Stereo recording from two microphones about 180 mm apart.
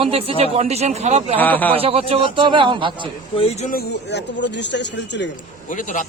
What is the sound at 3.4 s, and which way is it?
Speech, 35° left (ahead or behind).